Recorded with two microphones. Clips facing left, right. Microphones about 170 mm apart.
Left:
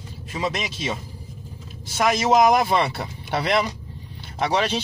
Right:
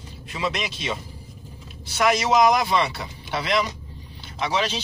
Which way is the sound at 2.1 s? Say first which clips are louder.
Left 3 dB; 50° left (ahead or behind).